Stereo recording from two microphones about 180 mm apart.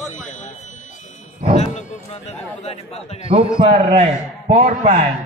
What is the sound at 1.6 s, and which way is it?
Speech, 40° left (ahead or behind).